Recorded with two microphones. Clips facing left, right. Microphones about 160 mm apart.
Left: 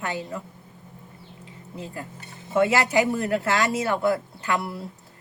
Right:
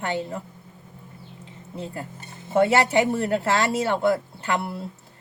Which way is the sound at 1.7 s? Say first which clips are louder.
Right 2 dB; 30° right (ahead or behind).